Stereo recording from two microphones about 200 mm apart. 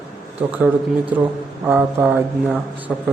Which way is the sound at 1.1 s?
10° right (ahead or behind).